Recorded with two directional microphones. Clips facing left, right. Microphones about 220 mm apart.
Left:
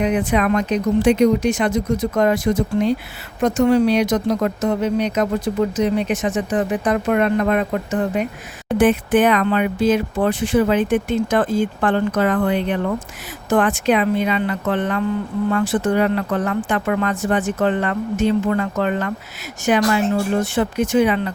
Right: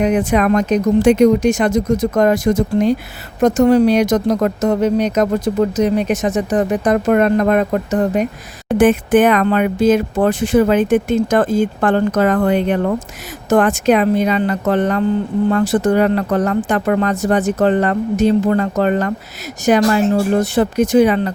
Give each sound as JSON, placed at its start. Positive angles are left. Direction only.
{"t": 0.0, "sound": "speech", "side_deg": -45}